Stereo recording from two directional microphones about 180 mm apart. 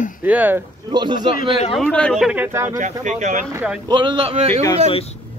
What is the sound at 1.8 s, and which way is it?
Speech, 5° left (ahead or behind).